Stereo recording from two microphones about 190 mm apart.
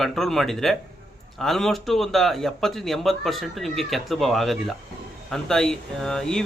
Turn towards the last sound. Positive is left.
turn(degrees=5)  # may be behind; listen again after turning